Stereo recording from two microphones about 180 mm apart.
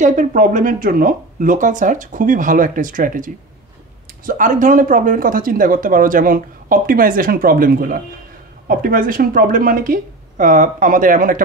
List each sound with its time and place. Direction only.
0.0 s speech: 45° right (ahead or behind)